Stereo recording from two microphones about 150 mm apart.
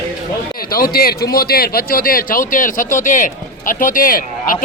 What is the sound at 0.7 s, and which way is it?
A man's voice, 80° left.